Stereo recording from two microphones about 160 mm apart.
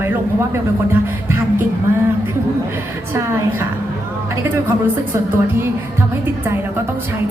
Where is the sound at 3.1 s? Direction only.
15° right (ahead or behind).